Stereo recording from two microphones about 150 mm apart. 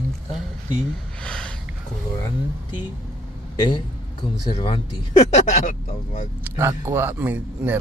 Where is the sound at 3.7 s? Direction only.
30° left (ahead or behind).